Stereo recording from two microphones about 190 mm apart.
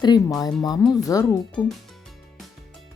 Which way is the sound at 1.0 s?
20° left (ahead or behind).